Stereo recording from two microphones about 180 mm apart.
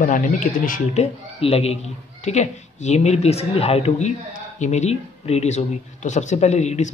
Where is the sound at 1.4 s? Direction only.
35° left (ahead or behind).